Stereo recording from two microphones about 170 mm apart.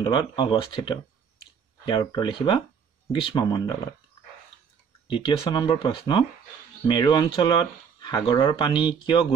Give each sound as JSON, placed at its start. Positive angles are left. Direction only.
{"t": 0.0, "sound": "speech", "side_deg": 25}
{"t": 5.0, "sound": "speech", "side_deg": 30}